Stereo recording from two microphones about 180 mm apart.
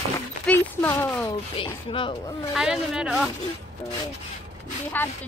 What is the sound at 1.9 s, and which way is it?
Speech, 25° left (ahead or behind).